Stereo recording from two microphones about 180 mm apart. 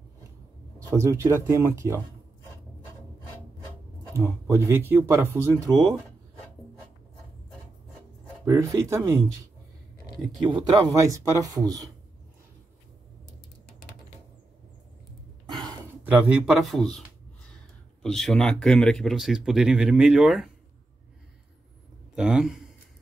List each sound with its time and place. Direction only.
0.7 s speech: 15° right (ahead or behind)
4.5 s speech: 15° right (ahead or behind)
8.5 s speech: 15° right (ahead or behind)
10.4 s speech: 25° right (ahead or behind)
16.0 s speech: 5° right (ahead or behind)
18.0 s speech: 5° left (ahead or behind)
22.1 s speech: 5° right (ahead or behind)